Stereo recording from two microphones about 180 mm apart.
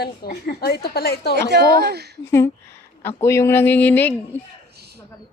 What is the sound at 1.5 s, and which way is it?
Speech, 65° right (ahead or behind).